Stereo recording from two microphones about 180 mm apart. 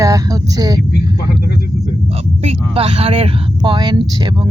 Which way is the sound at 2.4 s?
30° right (ahead or behind).